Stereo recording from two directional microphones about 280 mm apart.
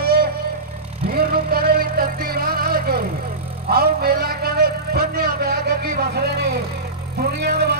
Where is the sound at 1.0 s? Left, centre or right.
Right.